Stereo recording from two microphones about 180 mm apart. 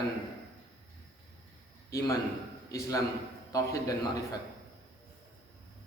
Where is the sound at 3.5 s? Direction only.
20° left (ahead or behind).